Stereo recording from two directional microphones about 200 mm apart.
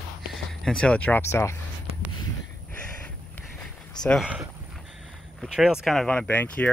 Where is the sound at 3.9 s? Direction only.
5° left (ahead or behind).